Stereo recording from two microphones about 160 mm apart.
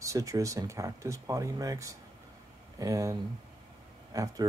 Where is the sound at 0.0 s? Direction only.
20° right (ahead or behind).